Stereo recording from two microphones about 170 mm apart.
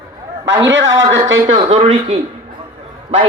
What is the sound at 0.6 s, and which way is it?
Speech, 90° right.